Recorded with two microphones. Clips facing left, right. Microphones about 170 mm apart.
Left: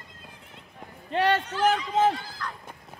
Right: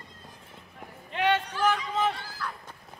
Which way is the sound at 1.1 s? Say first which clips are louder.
Left 2 dB; 35° left (ahead or behind).